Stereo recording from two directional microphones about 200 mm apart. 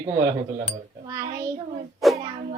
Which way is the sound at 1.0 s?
15° right (ahead or behind).